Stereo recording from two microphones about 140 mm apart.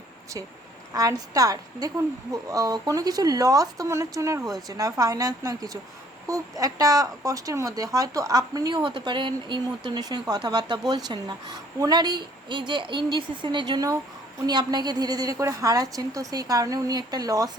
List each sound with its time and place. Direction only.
0.9 s speech: 25° right (ahead or behind)